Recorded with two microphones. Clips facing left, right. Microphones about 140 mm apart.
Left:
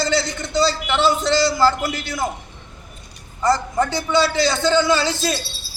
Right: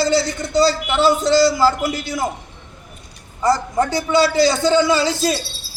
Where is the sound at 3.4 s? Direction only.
10° right (ahead or behind).